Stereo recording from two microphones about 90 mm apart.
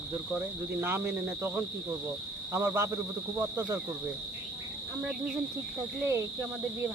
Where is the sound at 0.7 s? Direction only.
25° right (ahead or behind).